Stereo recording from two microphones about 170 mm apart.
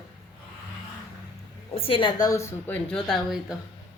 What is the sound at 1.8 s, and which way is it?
A woman's voice, 30° left (ahead or behind).